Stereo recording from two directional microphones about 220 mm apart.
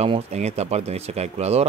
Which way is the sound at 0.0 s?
30° right (ahead or behind).